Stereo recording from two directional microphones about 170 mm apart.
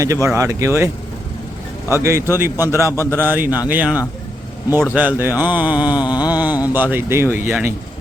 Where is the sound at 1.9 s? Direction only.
15° right (ahead or behind).